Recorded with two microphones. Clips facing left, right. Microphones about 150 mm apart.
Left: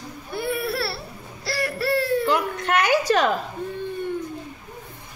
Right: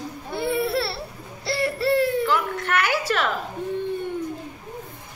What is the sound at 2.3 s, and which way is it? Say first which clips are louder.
A woman's voice: left 1 dB; 20° left (ahead or behind).